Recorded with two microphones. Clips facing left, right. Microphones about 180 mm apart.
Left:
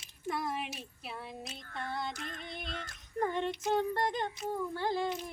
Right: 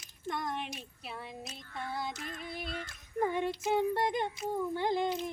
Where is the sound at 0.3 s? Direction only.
5° left (ahead or behind).